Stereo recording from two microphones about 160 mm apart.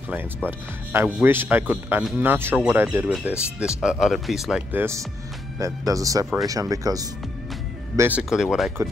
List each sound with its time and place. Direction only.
0.5 s speech: 15° right (ahead or behind)
4.7 s speech: 15° right (ahead or behind)
8.2 s speech: 5° right (ahead or behind)